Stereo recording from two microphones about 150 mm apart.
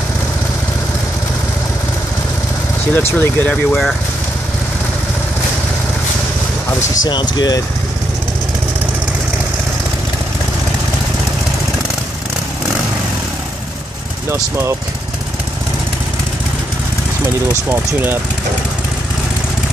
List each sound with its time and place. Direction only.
2.9 s speech: 15° left (ahead or behind)
6.8 s speech: 25° left (ahead or behind)
14.3 s speech: 15° right (ahead or behind)